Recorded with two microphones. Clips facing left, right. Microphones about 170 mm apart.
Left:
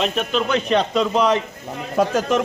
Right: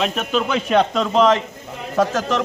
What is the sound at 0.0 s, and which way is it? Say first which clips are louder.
Speech: even; 5° right (ahead or behind).